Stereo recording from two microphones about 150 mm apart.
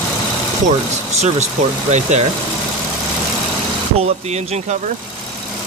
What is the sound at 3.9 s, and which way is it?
Speech, 45° right (ahead or behind).